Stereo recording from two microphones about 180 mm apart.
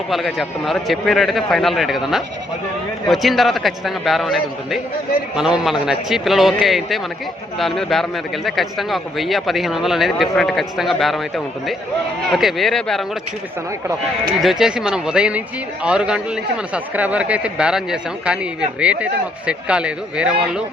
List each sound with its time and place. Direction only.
0.1 s a man's voice: centre (ahead or behind)
14.4 s a man's voice: 5° right (ahead or behind)